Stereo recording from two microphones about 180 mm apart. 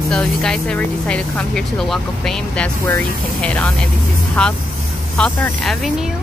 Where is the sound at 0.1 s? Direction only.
5° left (ahead or behind).